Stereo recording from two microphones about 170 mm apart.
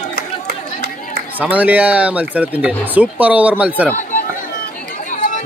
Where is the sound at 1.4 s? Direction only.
10° right (ahead or behind).